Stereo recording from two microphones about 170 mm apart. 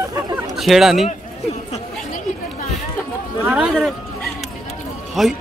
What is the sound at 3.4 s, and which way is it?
Speech, 5° right (ahead or behind).